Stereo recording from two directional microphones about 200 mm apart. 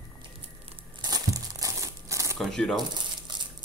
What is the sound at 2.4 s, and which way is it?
Speech, centre (ahead or behind).